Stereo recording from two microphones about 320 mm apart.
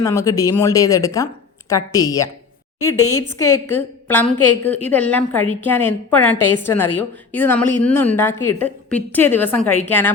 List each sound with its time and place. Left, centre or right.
0.0 s a woman's voice: centre
3.0 s a woman's voice: left
4.7 s a woman's voice: centre